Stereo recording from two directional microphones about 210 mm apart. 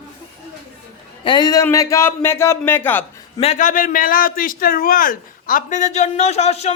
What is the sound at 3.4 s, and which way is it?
A man's voice, 35° left (ahead or behind).